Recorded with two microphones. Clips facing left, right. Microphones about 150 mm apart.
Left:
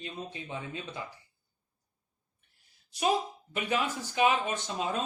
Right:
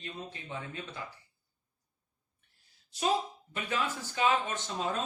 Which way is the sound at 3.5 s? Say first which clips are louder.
Left 3 dB; 15° left (ahead or behind).